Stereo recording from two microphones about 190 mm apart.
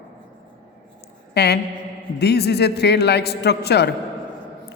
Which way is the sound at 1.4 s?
60° left (ahead or behind).